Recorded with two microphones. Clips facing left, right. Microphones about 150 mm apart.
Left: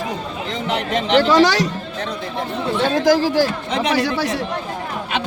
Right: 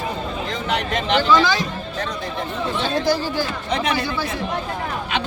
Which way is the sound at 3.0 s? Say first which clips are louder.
Left 6 dB; 90° left.